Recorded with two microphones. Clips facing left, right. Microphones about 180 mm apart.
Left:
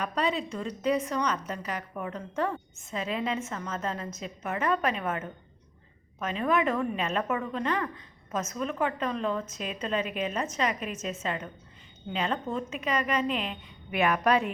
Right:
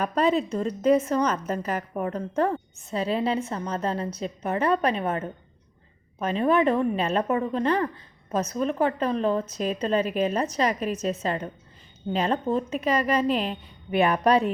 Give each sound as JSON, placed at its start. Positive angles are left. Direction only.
{"t": 0.0, "sound": "a woman's voice", "side_deg": -45}